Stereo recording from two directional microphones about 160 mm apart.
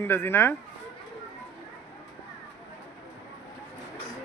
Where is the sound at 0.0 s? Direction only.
15° left (ahead or behind).